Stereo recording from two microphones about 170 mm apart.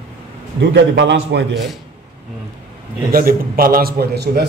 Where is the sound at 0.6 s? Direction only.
90° right.